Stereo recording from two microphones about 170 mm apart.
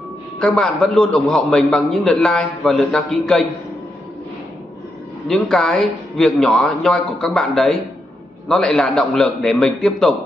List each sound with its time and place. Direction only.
0.4 s a man's voice: 5° left (ahead or behind)
5.3 s a man's voice: 5° left (ahead or behind)